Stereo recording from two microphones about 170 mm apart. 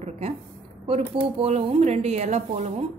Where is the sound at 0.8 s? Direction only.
35° right (ahead or behind).